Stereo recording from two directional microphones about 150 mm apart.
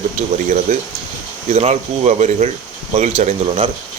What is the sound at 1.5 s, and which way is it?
Speech, 45° right (ahead or behind).